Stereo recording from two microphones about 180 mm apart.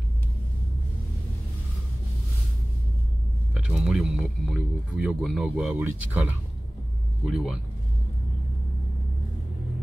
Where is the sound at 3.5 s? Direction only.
Centre (ahead or behind).